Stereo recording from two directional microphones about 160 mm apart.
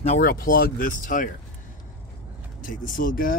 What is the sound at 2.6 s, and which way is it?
Speech, 60° left (ahead or behind).